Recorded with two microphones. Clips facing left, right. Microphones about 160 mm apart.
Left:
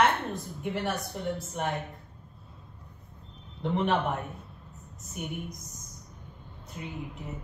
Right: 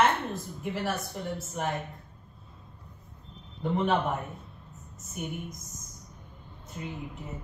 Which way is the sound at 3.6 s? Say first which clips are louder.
Even; centre (ahead or behind).